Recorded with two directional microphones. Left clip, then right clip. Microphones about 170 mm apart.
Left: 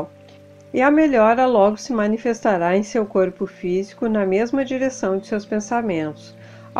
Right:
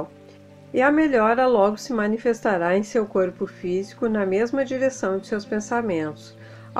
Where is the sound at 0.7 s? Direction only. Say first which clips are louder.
Left 3 dB; 20° left (ahead or behind).